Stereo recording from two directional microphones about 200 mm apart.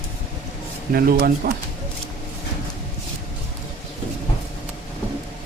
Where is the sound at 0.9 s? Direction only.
50° right (ahead or behind).